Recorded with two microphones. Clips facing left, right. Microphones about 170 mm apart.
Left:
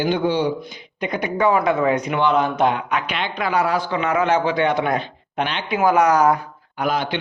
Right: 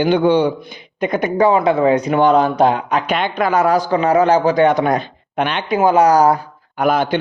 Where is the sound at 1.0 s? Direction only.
45° right (ahead or behind).